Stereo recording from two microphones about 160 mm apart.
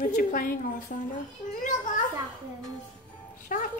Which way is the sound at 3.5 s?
55° left (ahead or behind).